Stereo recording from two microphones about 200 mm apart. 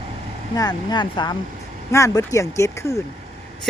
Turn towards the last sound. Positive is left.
turn(degrees=15)  # may be behind; listen again after turning